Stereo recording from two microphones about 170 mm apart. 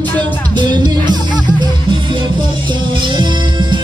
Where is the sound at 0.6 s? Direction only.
25° right (ahead or behind).